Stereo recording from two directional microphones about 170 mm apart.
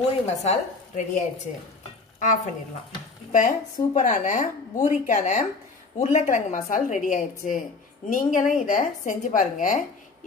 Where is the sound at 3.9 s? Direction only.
45° left (ahead or behind).